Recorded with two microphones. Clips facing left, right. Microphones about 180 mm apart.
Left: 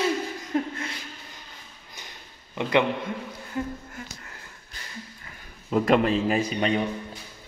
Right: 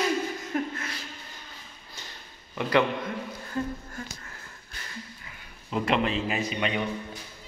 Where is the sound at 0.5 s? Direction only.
25° left (ahead or behind).